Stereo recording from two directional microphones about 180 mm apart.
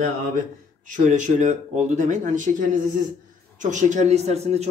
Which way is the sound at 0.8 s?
45° right (ahead or behind).